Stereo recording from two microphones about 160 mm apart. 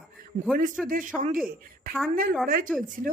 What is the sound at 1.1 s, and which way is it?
Speech, 55° right (ahead or behind).